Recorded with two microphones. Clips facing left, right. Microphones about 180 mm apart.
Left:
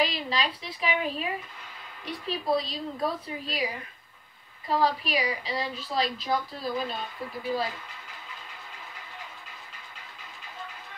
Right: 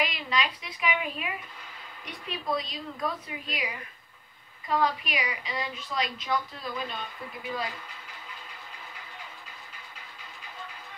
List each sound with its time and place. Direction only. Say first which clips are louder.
0.0 s a woman's voice: left 2 dB; 30° left (ahead or behind)